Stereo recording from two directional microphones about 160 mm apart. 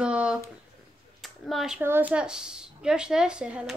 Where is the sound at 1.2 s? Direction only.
Centre (ahead or behind).